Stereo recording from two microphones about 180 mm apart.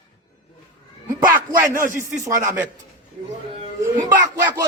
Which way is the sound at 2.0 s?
15° right (ahead or behind).